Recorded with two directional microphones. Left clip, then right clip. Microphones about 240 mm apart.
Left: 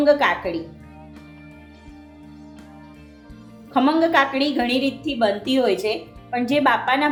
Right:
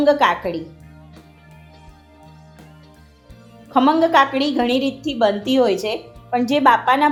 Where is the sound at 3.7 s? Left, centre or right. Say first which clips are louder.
Right 3 dB; right.